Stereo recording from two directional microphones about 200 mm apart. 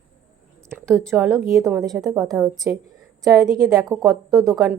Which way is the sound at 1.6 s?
15° right (ahead or behind).